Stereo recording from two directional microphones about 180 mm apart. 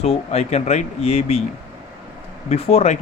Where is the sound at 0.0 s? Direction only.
35° left (ahead or behind).